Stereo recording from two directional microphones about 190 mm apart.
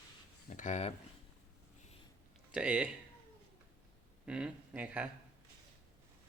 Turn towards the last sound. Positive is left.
turn(degrees=-10)  # may be behind; listen again after turning